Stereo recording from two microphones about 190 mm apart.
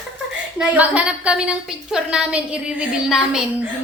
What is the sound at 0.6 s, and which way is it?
A woman's voice, 5° right (ahead or behind).